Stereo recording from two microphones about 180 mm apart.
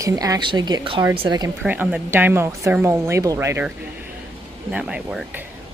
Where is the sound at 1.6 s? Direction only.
10° right (ahead or behind).